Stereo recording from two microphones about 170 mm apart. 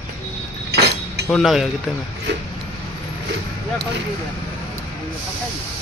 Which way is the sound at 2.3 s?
90° right.